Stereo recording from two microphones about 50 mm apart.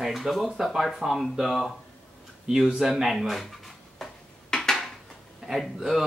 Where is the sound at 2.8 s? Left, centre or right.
Centre.